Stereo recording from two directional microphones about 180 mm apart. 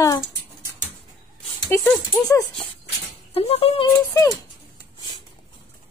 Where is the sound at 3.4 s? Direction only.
35° left (ahead or behind).